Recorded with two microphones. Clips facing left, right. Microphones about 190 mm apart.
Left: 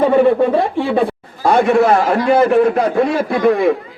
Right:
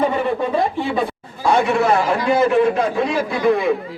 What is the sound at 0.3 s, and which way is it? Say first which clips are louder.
Speech: left 5 dB; 60° left (ahead or behind).